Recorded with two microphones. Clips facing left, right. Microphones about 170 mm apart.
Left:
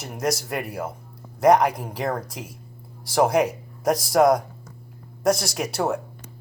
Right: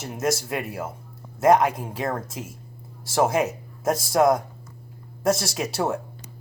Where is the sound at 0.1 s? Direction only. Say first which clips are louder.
Even; 5° right (ahead or behind).